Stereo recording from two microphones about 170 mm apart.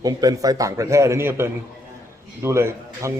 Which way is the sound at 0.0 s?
20° right (ahead or behind).